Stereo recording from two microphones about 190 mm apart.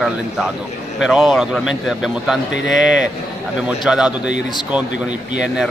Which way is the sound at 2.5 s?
75° left (ahead or behind).